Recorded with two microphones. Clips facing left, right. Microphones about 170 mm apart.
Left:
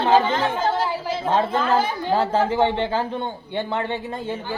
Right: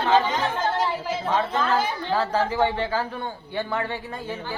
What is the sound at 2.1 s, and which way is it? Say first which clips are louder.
A woman's voice: left 4 dB; 25° left (ahead or behind).